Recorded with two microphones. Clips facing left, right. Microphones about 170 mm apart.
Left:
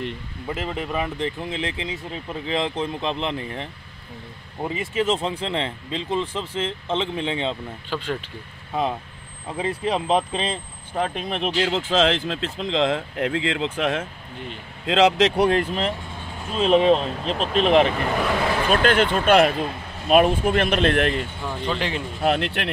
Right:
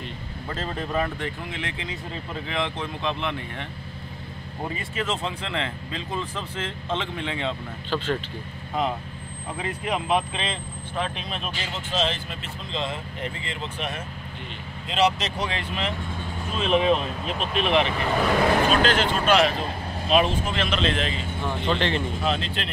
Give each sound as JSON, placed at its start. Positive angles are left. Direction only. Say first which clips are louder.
{"t": 0.5, "sound": "speech", "louder": "left 2 dB", "side_deg": 10}
{"t": 1.2, "sound": "speech", "louder": "left 5 dB", "side_deg": 30}
{"t": 4.6, "sound": "speech", "louder": "left 6 dB", "side_deg": 20}
{"t": 7.9, "sound": "speech", "louder": "right 1 dB", "side_deg": 10}
{"t": 9.6, "sound": "speech", "louder": "left 5 dB", "side_deg": 25}
{"t": 16.5, "sound": "speech", "louder": "left 5 dB", "side_deg": 35}
{"t": 18.7, "sound": "speech", "louder": "left 3 dB", "side_deg": 55}
{"t": 21.6, "sound": "speech", "louder": "right 2 dB", "side_deg": 10}
{"t": 22.2, "sound": "speech", "louder": "left 5 dB", "side_deg": 65}